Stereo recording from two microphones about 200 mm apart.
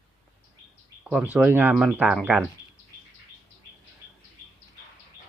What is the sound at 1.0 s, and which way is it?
Speech, 5° right (ahead or behind).